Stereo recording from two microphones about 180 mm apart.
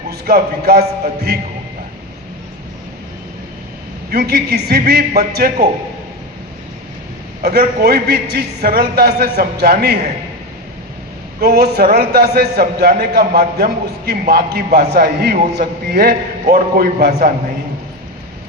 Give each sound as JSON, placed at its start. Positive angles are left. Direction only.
{"t": 0.1, "sound": "a man's voice", "side_deg": -55}
{"t": 4.1, "sound": "a man's voice", "side_deg": -60}
{"t": 7.4, "sound": "a man's voice", "side_deg": -60}
{"t": 11.3, "sound": "a man's voice", "side_deg": -60}